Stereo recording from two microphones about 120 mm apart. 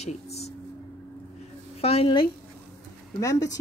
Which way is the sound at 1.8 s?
55° left (ahead or behind).